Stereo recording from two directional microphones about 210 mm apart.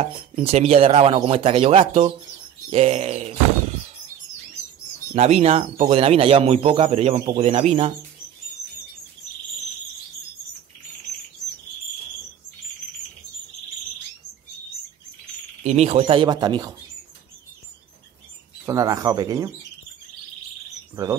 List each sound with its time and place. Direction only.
0.0 s speech: 30° right (ahead or behind)
5.1 s speech: 30° right (ahead or behind)
15.6 s speech: 30° right (ahead or behind)
18.7 s speech: 15° right (ahead or behind)
20.9 s speech: 15° right (ahead or behind)